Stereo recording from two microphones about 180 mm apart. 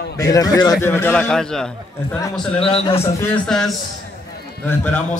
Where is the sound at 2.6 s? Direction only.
30° left (ahead or behind).